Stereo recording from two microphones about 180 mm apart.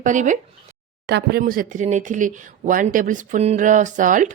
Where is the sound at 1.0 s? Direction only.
65° right (ahead or behind); by 4.3 s 45° right (ahead or behind).